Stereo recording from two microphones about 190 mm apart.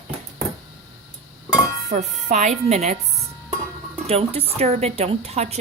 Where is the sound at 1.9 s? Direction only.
35° right (ahead or behind).